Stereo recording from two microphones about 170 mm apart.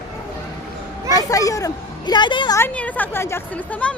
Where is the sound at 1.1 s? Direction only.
20° left (ahead or behind).